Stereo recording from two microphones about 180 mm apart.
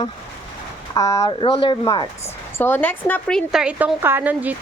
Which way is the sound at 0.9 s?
20° left (ahead or behind).